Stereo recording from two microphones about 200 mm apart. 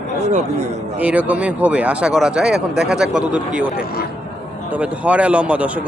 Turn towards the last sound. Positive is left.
turn(degrees=-5)  # may be behind; listen again after turning